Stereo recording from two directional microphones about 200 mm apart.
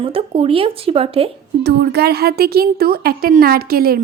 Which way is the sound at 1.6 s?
50° right (ahead or behind).